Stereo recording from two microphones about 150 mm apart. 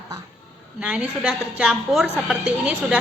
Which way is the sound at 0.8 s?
5° right (ahead or behind).